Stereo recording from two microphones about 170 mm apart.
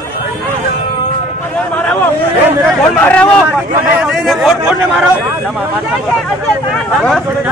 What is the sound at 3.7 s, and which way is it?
A man's voice, 10° right (ahead or behind).